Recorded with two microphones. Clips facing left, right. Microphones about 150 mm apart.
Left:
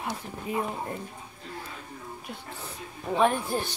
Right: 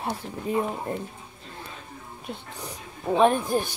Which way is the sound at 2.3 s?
15° right (ahead or behind).